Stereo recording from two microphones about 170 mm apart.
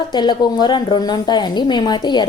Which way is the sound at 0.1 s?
25° left (ahead or behind).